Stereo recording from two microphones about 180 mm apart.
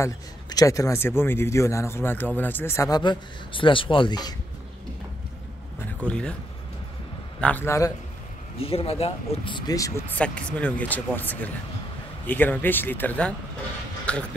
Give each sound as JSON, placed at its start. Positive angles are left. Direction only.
{"t": 0.0, "sound": "a man's voice", "side_deg": 20}
{"t": 5.9, "sound": "speech", "side_deg": 5}
{"t": 7.3, "sound": "a man's voice", "side_deg": 10}
{"t": 8.5, "sound": "speech", "side_deg": 35}
{"t": 10.1, "sound": "a man's voice", "side_deg": 5}